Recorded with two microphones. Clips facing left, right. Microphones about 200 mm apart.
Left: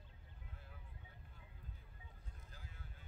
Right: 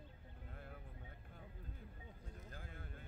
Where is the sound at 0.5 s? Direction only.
55° right (ahead or behind).